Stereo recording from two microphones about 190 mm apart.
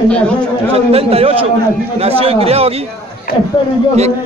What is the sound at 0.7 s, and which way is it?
A man's voice, 30° right (ahead or behind).